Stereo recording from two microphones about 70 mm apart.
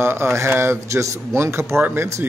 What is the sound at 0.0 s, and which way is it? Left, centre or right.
Speech, right.